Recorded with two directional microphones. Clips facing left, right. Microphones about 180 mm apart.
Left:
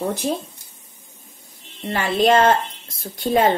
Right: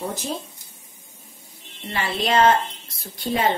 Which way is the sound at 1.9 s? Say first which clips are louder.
Left 6 dB; 50° left (ahead or behind).